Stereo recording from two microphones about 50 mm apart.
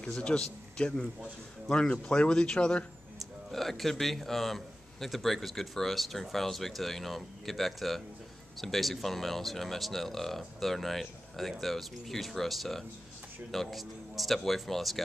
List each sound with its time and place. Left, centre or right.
0.0 s a man's voice: centre
3.5 s a man's voice: centre